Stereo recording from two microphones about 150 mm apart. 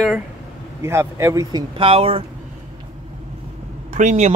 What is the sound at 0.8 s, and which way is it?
Speech, 20° right (ahead or behind).